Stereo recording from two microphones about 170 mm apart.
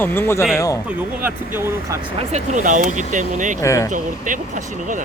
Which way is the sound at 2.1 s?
40° right (ahead or behind).